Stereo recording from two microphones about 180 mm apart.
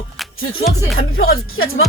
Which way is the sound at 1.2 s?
55° left (ahead or behind).